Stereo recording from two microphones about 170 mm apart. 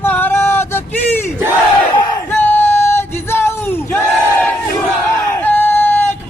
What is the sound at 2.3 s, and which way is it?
Crowd, 15° left (ahead or behind).